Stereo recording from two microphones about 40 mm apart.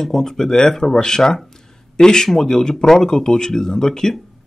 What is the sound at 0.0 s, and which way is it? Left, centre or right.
Speech, centre.